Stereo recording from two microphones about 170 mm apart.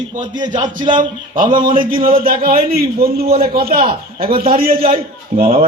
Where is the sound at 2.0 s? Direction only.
60° right (ahead or behind).